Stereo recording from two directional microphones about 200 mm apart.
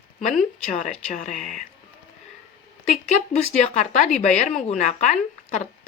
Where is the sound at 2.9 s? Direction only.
40° left (ahead or behind).